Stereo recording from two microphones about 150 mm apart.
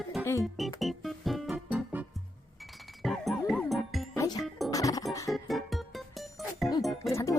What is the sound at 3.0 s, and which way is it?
Music, centre (ahead or behind).